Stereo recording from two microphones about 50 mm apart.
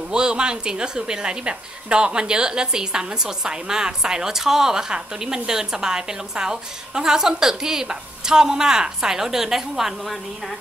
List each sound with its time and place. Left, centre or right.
0.1 s a woman's voice: centre